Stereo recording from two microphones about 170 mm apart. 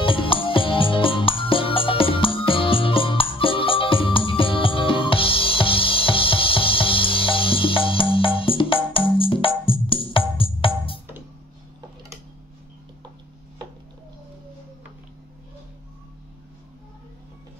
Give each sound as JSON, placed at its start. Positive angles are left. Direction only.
{"t": 0.0, "sound": "music", "side_deg": 30}